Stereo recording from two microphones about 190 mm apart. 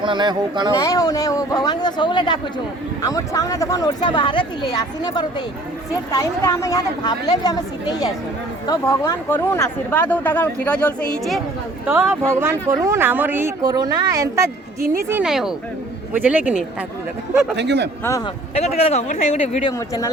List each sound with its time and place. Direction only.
0.0 s speech: 25° right (ahead or behind)
0.8 s speech: 20° left (ahead or behind)
11.9 s speech: 10° right (ahead or behind)
15.1 s speech: 5° right (ahead or behind)
17.6 s a man's voice: 65° right (ahead or behind)
18.8 s speech: 35° left (ahead or behind)
19.6 s speech: 15° left (ahead or behind)